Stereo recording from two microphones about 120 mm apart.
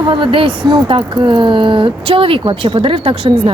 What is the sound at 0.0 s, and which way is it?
Speech, 45° right (ahead or behind).